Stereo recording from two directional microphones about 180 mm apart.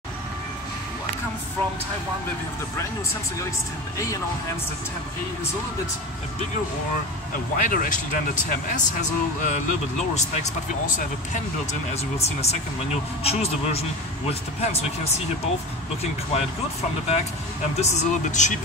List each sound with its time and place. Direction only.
7.6 s speech: 50° left (ahead or behind)
17.7 s speech: 40° left (ahead or behind)